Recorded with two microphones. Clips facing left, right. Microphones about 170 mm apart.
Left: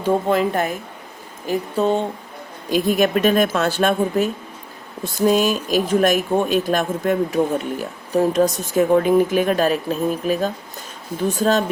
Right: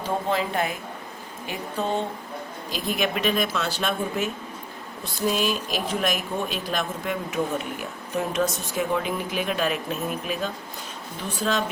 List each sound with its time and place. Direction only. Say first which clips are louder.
0.3 s speech: left 6 dB; 50° left (ahead or behind)
2.6 s speech: left 10 dB; 50° left (ahead or behind)